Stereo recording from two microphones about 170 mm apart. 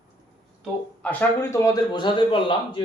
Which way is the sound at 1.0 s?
10° left (ahead or behind).